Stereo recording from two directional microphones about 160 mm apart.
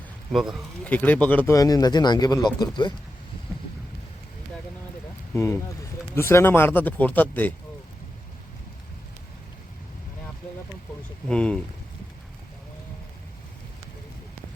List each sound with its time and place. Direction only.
0.3 s speech: centre (ahead or behind)
0.9 s speech: 10° left (ahead or behind)
1.5 s speech: 25° left (ahead or behind)
5.3 s speech: 15° left (ahead or behind)
11.3 s speech: 5° left (ahead or behind)